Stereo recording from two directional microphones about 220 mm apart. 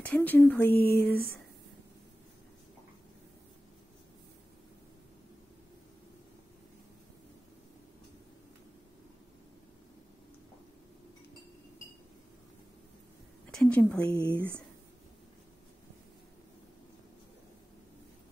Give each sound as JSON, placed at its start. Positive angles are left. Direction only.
{"t": 0.1, "sound": "speech", "side_deg": 10}
{"t": 0.8, "sound": "a sound", "side_deg": 45}
{"t": 13.5, "sound": "speech", "side_deg": 5}